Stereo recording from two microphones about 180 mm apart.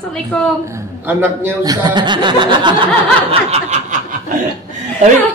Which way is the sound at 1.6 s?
20° right (ahead or behind).